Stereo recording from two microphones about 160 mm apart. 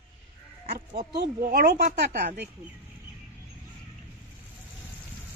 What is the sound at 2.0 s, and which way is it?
Speech, 90° right.